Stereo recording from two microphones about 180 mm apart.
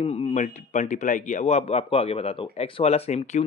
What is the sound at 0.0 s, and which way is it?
Speech, 35° left (ahead or behind).